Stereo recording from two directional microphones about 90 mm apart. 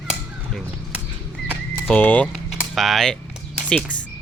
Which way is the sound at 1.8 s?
20° left (ahead or behind).